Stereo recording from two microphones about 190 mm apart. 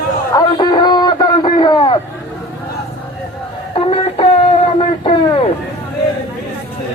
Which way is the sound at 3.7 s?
30° left (ahead or behind).